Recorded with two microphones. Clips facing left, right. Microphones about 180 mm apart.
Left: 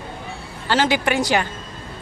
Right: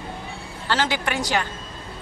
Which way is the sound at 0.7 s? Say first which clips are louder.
Left 5 dB; 15° left (ahead or behind).